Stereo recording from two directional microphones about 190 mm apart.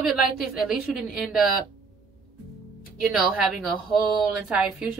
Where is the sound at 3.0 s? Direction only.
Centre (ahead or behind).